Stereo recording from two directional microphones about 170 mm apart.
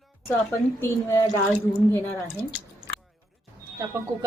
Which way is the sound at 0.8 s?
15° left (ahead or behind).